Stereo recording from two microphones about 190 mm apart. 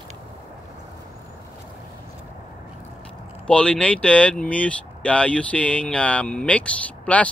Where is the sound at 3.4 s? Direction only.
5° left (ahead or behind).